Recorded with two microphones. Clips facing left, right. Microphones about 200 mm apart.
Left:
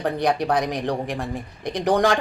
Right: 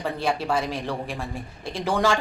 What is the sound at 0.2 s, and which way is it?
Speech, 15° left (ahead or behind).